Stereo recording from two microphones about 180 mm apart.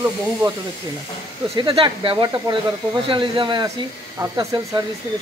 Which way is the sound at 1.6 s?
30° right (ahead or behind).